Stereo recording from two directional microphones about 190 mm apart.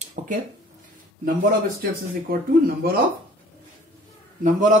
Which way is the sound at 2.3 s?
50° right (ahead or behind).